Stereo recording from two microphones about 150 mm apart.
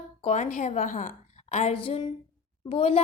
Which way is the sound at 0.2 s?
50° left (ahead or behind).